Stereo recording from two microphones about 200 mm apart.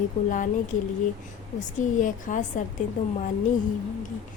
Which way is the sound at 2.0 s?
40° left (ahead or behind).